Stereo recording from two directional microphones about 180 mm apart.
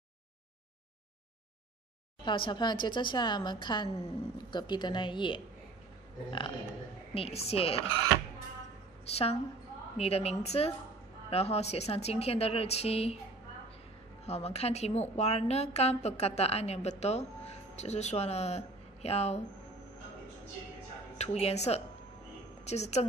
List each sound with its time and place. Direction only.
2.2 s a woman's voice: 25° left (ahead or behind)
7.2 s a woman's voice: 35° left (ahead or behind)
9.0 s a woman's voice: 35° left (ahead or behind)
14.2 s a woman's voice: 35° left (ahead or behind)
21.2 s a woman's voice: 35° left (ahead or behind)